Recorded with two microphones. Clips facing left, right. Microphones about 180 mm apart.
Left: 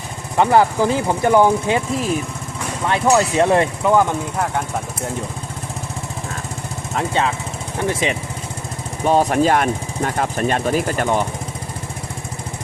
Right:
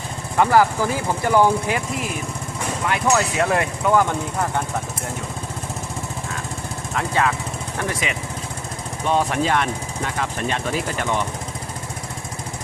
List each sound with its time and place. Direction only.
0.3 s speech: 20° left (ahead or behind)
2.9 s speech: 30° left (ahead or behind)
6.9 s speech: 25° left (ahead or behind)
9.0 s speech: 40° left (ahead or behind)